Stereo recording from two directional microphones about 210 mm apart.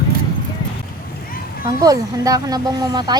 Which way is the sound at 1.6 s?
15° right (ahead or behind).